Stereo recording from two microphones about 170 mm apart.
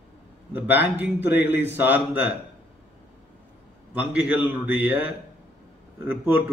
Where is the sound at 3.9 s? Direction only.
10° right (ahead or behind).